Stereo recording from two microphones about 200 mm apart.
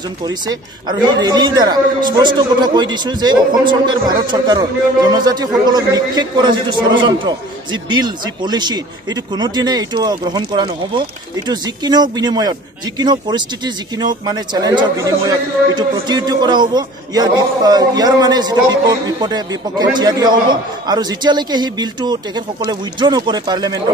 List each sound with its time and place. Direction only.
0.2 s a woman's voice: 20° right (ahead or behind)